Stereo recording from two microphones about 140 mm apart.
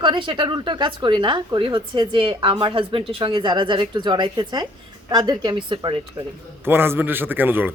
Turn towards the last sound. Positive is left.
turn(degrees=-15)  # may be behind; listen again after turning